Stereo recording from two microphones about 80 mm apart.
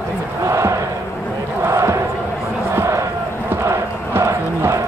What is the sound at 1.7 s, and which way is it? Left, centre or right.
Chant, right.